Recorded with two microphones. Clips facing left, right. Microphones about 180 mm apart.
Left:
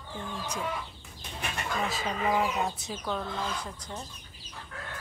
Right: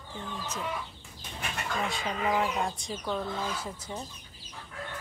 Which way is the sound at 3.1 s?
5° right (ahead or behind).